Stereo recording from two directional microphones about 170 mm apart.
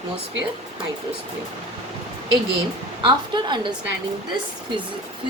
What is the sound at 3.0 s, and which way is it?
Speech, 30° right (ahead or behind).